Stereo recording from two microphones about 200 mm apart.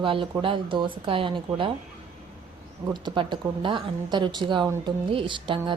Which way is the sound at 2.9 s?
25° right (ahead or behind).